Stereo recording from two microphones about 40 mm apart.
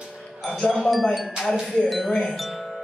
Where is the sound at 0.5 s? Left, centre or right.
Centre.